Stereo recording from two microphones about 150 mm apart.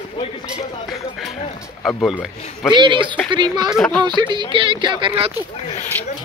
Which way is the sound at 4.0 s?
30° right (ahead or behind).